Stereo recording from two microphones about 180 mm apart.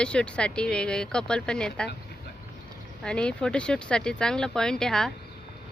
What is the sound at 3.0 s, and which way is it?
A woman's voice, 5° left (ahead or behind).